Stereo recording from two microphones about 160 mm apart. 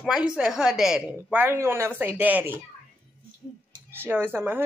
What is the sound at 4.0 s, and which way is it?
Speech, 15° right (ahead or behind).